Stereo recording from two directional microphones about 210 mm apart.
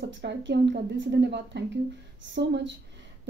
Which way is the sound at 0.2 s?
55° right (ahead or behind).